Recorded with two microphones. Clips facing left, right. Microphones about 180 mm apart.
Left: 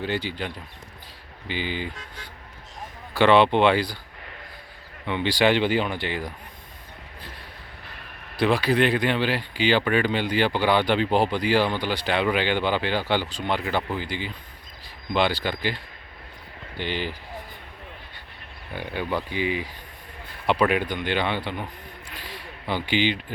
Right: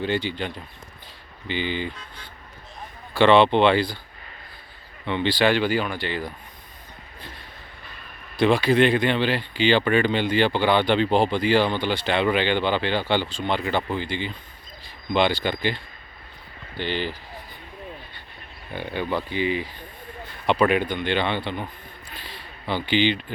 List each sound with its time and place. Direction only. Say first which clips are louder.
0.0 s speech: right 3 dB; 5° left (ahead or behind)
2.0 s speech: left 1 dB; 90° left
3.2 s speech: right 1 dB; 5° left (ahead or behind)
5.0 s speech: even; 10° left (ahead or behind)
8.4 s speech: right 3 dB; 5° left (ahead or behind)
15.4 s speech: right 2 dB; 5° left (ahead or behind)
18.7 s speech: right 1 dB; 10° left (ahead or behind)
22.1 s a sound: left 1 dB; 90° left
22.4 s speech: right 1 dB; 10° left (ahead or behind)